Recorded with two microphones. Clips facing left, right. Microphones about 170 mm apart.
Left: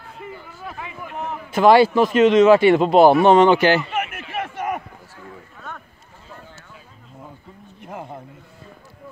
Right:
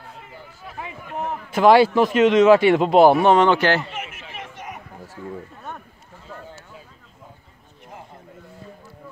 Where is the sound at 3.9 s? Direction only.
60° left (ahead or behind).